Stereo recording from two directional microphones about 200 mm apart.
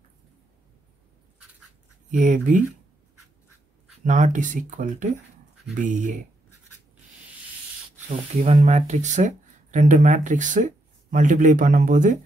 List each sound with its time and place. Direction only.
2.0 s speech: 40° right (ahead or behind)
4.0 s speech: 40° right (ahead or behind)
8.4 s speech: 35° right (ahead or behind)